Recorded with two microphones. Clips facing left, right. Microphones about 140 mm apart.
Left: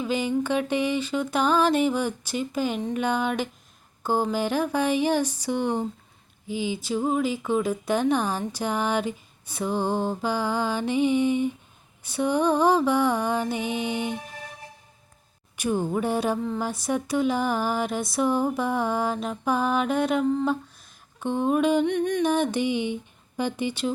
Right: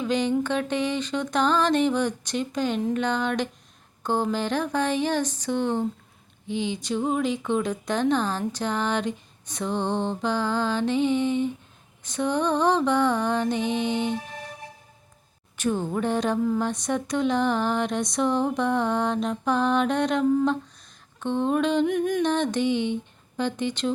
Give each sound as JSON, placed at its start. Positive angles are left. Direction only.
{"t": 0.0, "sound": "speech", "side_deg": 5}
{"t": 15.5, "sound": "speech", "side_deg": 10}
{"t": 16.4, "sound": "music", "side_deg": -5}
{"t": 16.6, "sound": "speech", "side_deg": 5}
{"t": 21.8, "sound": "music", "side_deg": 0}
{"t": 22.3, "sound": "speech", "side_deg": 10}